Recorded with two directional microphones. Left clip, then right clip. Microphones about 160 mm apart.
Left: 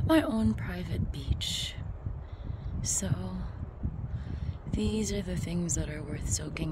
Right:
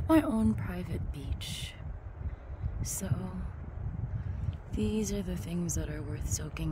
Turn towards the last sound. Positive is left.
turn(degrees=5)  # may be behind; listen again after turning